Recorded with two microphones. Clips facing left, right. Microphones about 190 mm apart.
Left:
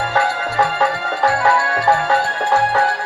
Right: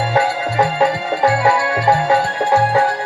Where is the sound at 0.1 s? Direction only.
15° right (ahead or behind).